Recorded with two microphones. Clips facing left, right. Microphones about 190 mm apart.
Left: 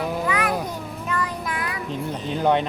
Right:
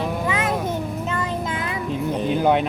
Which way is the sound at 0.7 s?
25° right (ahead or behind).